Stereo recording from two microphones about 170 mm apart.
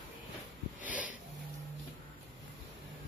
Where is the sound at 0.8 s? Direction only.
10° right (ahead or behind).